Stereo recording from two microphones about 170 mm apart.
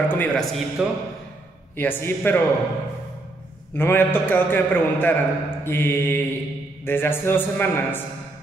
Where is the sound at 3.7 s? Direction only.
10° left (ahead or behind).